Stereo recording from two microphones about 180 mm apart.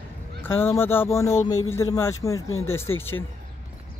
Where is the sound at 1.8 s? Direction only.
15° left (ahead or behind).